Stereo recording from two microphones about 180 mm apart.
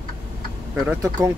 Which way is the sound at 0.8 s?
15° right (ahead or behind).